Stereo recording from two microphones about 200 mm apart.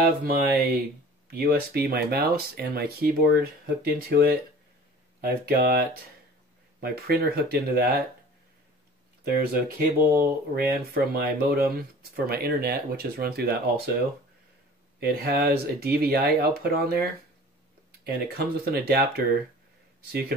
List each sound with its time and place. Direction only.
0.2 s speech: 50° right (ahead or behind)
5.4 s speech: 50° right (ahead or behind)
9.2 s speech: 50° right (ahead or behind)
15.0 s speech: 50° right (ahead or behind)